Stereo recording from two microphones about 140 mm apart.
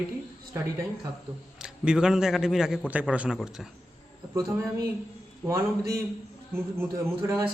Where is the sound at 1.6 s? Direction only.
5° right (ahead or behind).